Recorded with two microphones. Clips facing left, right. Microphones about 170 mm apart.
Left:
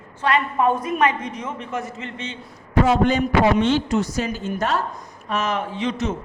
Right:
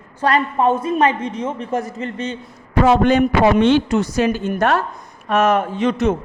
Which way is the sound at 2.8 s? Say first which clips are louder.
Right 4 dB; 70° right (ahead or behind).